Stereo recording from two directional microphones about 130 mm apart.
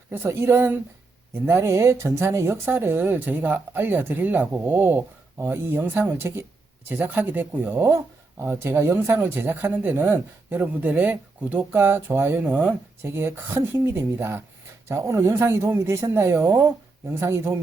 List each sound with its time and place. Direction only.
0.1 s speech: 20° right (ahead or behind)